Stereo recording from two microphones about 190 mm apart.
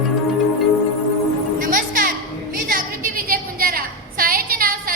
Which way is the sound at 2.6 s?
45° right (ahead or behind).